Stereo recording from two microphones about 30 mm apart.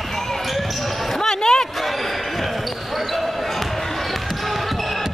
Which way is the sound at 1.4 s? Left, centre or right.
Left.